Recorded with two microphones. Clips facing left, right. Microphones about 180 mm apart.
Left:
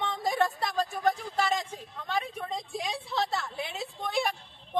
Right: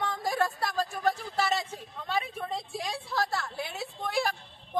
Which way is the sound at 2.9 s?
20° left (ahead or behind).